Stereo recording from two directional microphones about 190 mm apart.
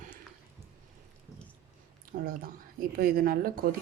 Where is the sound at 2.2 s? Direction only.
50° right (ahead or behind).